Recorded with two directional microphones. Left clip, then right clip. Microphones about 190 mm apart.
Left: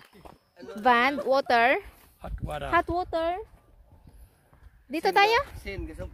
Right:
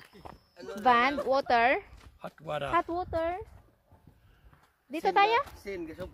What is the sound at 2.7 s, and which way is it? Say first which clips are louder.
Speech: left 5 dB; 55° left (ahead or behind).